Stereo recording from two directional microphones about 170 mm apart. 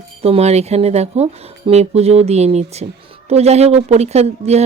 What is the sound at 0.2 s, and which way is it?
Speech, 35° right (ahead or behind).